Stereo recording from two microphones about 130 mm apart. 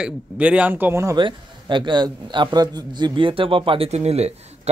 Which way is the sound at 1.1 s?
40° right (ahead or behind).